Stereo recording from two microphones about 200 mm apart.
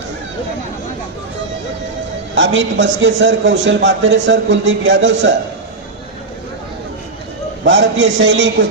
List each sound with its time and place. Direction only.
2.3 s a man's voice: 65° right (ahead or behind)
7.6 s a man's voice: 65° right (ahead or behind)